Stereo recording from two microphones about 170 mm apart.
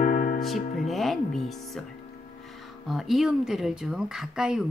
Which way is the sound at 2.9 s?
Centre (ahead or behind).